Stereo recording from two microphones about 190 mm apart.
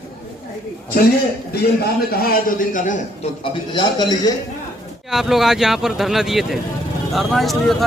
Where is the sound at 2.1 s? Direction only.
50° left (ahead or behind).